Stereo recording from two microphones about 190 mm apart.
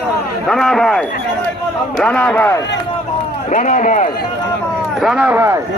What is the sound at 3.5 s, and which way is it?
Speech, 40° left (ahead or behind).